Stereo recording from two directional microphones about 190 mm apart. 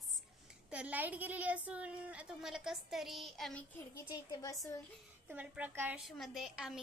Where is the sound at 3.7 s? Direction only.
20° left (ahead or behind).